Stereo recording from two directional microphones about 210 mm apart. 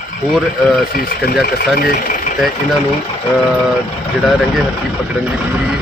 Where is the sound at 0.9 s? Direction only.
45° left (ahead or behind).